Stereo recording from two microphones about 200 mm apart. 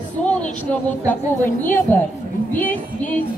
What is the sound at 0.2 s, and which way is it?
A woman's voice, 5° left (ahead or behind).